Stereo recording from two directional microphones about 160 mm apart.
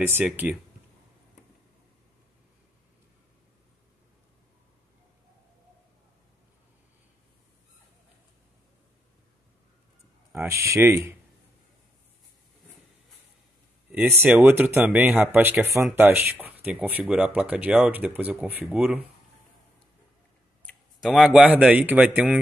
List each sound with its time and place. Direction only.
0.0 s speech: 10° right (ahead or behind)
10.3 s speech: 15° right (ahead or behind)
13.9 s speech: 15° right (ahead or behind)
21.0 s speech: 5° right (ahead or behind)